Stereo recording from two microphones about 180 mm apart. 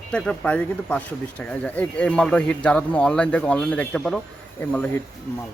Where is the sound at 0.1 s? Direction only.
5° left (ahead or behind).